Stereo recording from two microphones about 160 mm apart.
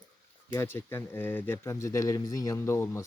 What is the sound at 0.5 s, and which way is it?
Speech, 15° left (ahead or behind).